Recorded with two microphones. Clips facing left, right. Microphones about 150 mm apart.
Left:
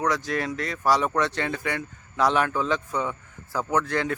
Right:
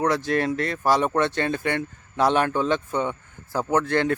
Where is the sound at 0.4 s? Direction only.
55° right (ahead or behind).